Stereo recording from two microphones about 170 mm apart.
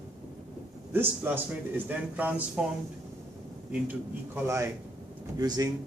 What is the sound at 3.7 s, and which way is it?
A man's voice, 10° right (ahead or behind).